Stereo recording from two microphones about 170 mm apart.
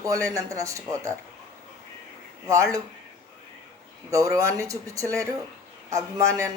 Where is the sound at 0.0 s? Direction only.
20° right (ahead or behind).